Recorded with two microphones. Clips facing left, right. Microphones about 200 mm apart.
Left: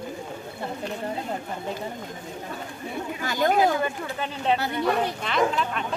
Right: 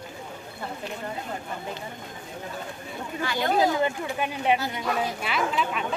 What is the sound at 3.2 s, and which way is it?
Chatter, 45° left (ahead or behind).